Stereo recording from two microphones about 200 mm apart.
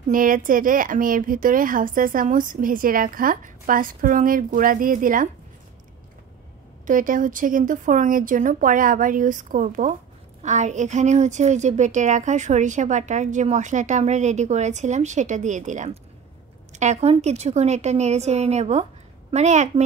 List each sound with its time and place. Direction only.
0.1 s speech: 45° right (ahead or behind)
6.9 s a woman's voice: 40° right (ahead or behind)